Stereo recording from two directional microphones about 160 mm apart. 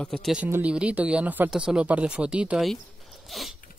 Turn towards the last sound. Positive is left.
turn(degrees=0)  # may be behind; listen again after turning